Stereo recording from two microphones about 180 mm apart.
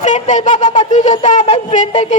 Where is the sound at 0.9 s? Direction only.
45° left (ahead or behind).